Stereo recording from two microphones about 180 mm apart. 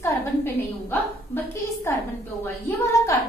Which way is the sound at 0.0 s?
10° left (ahead or behind).